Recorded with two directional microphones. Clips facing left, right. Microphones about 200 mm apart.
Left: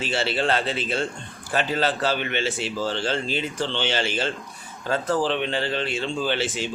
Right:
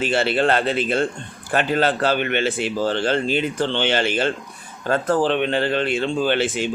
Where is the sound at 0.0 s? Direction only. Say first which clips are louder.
Right 5 dB; 55° right (ahead or behind).